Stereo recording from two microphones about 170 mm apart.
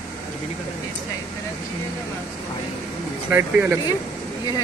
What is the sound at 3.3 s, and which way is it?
Speech, 15° right (ahead or behind).